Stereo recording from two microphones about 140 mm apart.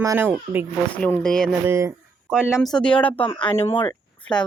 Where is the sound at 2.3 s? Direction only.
5° right (ahead or behind).